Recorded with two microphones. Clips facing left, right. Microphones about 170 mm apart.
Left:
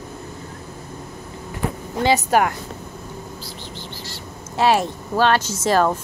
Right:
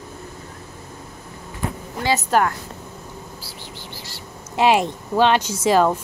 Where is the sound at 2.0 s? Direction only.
15° left (ahead or behind).